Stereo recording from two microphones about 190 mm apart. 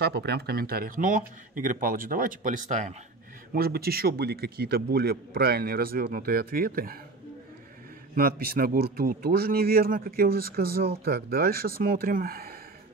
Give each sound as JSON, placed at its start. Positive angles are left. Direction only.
{"t": 0.0, "sound": "speech", "side_deg": -60}
{"t": 3.5, "sound": "speech", "side_deg": -55}
{"t": 8.2, "sound": "speech", "side_deg": -50}